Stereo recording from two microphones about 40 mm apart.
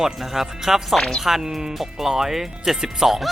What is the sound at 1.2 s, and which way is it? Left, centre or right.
Speech, centre.